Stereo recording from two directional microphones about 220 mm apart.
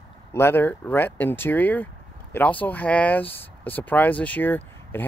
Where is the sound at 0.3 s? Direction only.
10° left (ahead or behind).